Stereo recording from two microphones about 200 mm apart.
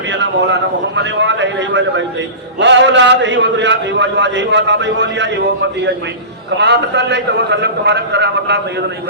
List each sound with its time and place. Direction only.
0.1 s a man's voice: 65° right (ahead or behind)
6.6 s a man's voice: 60° right (ahead or behind)